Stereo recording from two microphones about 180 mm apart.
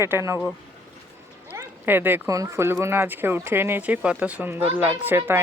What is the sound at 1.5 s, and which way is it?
Speech, 10° right (ahead or behind).